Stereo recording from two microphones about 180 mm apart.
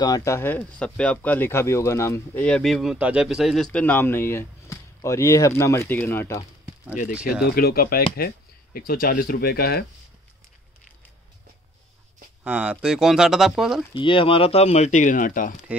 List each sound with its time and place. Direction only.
0.0 s speech: 20° left (ahead or behind)
7.4 s speech: 60° left (ahead or behind)
12.4 s speech: 5° right (ahead or behind)
13.9 s speech: 30° left (ahead or behind); by 15.5 s 50° left (ahead or behind)